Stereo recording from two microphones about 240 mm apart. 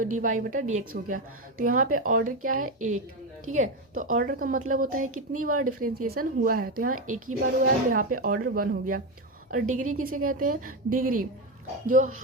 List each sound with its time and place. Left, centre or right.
0.0 s a woman's voice: right